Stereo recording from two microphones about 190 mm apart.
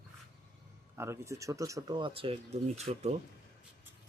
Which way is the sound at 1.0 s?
15° right (ahead or behind).